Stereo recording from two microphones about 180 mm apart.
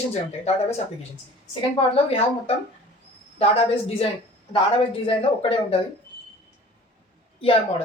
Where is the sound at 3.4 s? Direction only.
30° left (ahead or behind).